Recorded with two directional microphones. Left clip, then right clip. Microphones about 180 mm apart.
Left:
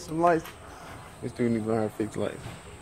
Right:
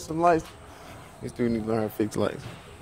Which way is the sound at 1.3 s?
50° right (ahead or behind).